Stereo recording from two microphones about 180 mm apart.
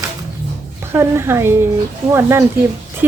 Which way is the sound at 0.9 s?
15° right (ahead or behind).